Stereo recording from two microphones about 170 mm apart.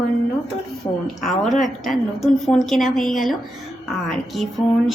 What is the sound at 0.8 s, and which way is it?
Speech, 25° left (ahead or behind).